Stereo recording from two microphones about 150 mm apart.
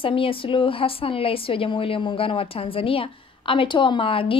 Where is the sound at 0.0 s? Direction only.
35° left (ahead or behind).